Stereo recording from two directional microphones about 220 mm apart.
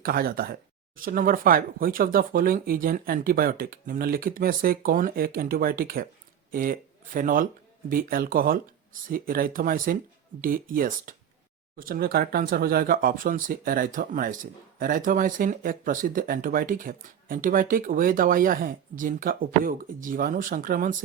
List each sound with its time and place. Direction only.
0.0 s speech: 40° right (ahead or behind)